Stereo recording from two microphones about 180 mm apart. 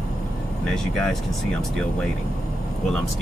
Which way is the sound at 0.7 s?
5° left (ahead or behind).